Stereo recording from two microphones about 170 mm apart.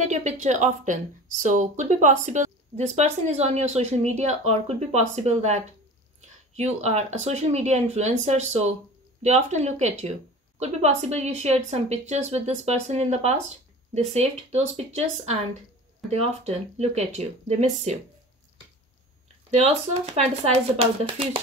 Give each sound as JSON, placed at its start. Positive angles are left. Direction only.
{"t": 0.0, "sound": "speech", "side_deg": -45}
{"t": 19.5, "sound": "speech", "side_deg": -40}